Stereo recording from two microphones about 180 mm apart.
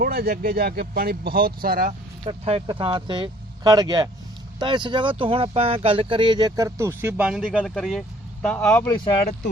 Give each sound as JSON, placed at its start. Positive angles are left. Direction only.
{"t": 0.0, "sound": "speech", "side_deg": -55}
{"t": 1.9, "sound": "speech", "side_deg": -35}